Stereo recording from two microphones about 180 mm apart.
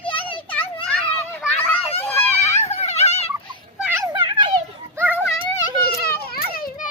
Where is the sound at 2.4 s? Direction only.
40° left (ahead or behind).